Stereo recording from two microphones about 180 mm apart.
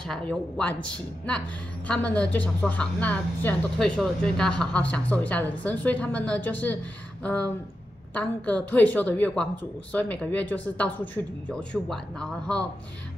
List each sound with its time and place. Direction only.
0.0 s a woman's voice: 5° left (ahead or behind)
1.9 s a woman's voice: 5° left (ahead or behind)